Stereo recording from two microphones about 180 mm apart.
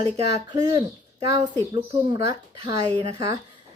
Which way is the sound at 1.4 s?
20° right (ahead or behind).